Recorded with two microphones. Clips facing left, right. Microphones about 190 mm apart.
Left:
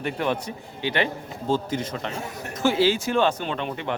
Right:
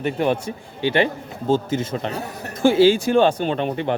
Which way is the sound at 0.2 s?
30° right (ahead or behind).